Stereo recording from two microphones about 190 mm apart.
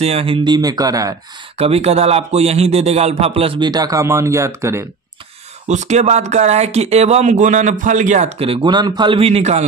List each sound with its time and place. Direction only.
0.0 s speech: 30° right (ahead or behind)
1.6 s speech: 35° right (ahead or behind); by 4.8 s 15° right (ahead or behind)
5.7 s speech: 35° right (ahead or behind)